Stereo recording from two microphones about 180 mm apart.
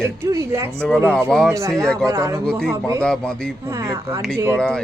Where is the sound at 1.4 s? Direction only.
15° right (ahead or behind).